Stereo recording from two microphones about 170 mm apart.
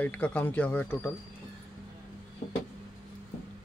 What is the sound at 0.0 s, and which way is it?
Speech, 10° left (ahead or behind).